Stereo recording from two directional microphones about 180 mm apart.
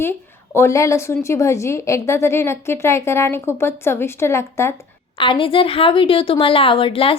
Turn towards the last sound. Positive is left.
turn(degrees=30)  # may be behind; listen again after turning